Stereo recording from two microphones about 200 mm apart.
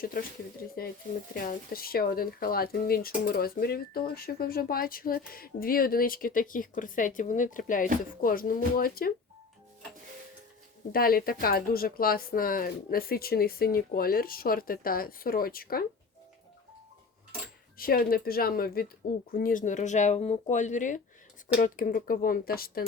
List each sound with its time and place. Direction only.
1.3 s speech: 45° left (ahead or behind)
10.9 s speech: 50° left (ahead or behind)
17.7 s speech: 50° left (ahead or behind)